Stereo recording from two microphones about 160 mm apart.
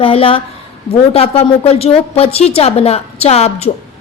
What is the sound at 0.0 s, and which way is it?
A woman's voice, 35° left (ahead or behind).